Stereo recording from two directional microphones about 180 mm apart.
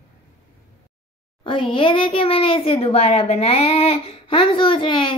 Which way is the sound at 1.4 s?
30° left (ahead or behind).